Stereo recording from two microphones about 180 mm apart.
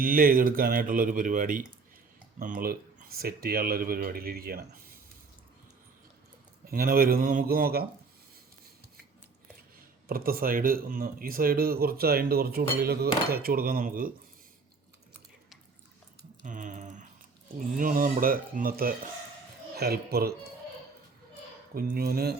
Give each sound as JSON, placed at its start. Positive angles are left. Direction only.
{"t": 0.0, "sound": "speech", "side_deg": -50}
{"t": 6.7, "sound": "speech", "side_deg": -55}
{"t": 10.1, "sound": "speech", "side_deg": -55}
{"t": 16.4, "sound": "a sound", "side_deg": -45}
{"t": 17.7, "sound": "speech", "side_deg": -50}
{"t": 21.8, "sound": "speech", "side_deg": -55}